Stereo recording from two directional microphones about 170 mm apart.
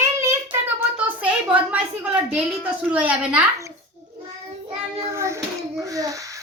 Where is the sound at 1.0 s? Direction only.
10° right (ahead or behind).